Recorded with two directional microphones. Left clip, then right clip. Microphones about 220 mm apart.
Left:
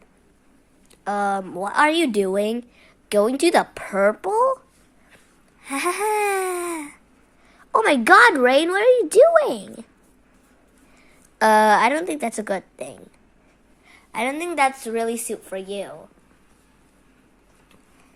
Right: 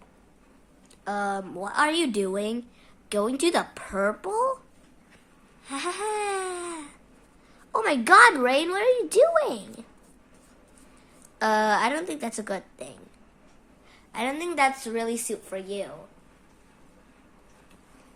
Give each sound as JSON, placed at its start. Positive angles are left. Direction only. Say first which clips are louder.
{"t": 1.0, "sound": "speech", "louder": "left 6 dB", "side_deg": 25}
{"t": 5.6, "sound": "a sound", "louder": "left 7 dB", "side_deg": 30}
{"t": 7.7, "sound": "speech", "louder": "left 5 dB", "side_deg": 25}
{"t": 11.3, "sound": "speech", "louder": "left 8 dB", "side_deg": 25}